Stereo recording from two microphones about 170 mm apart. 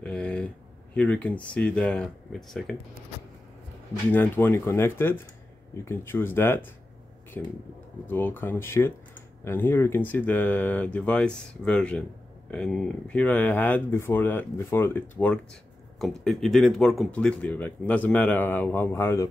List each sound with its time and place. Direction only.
0.0 s a sound: 5° left (ahead or behind)
0.9 s speech: 5° left (ahead or behind)
4.1 s speech: 10° left (ahead or behind)